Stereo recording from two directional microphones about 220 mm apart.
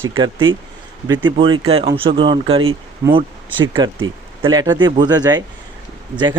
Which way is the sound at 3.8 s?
20° right (ahead or behind).